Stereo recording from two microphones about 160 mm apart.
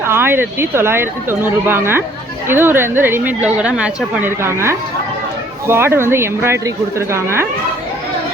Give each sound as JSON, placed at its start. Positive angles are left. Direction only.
{"t": 0.0, "sound": "a woman's voice", "side_deg": -15}